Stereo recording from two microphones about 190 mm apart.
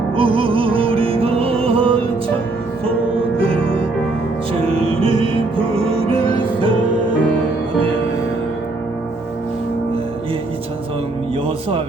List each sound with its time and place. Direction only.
0.2 s music: 30° right (ahead or behind)
4.7 s music: 30° right (ahead or behind)